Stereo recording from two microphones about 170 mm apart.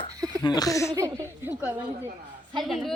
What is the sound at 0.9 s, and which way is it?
Speech, 20° right (ahead or behind).